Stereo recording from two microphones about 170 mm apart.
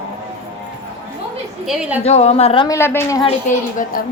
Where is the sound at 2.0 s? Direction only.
40° left (ahead or behind).